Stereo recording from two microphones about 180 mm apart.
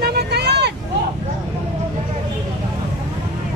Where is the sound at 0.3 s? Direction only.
65° right (ahead or behind).